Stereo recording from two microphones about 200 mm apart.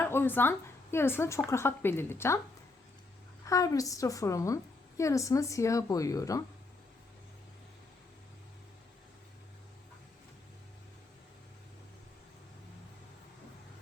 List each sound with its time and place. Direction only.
0.0 s a woman's voice: 10° left (ahead or behind)
3.4 s a woman's voice: 15° left (ahead or behind)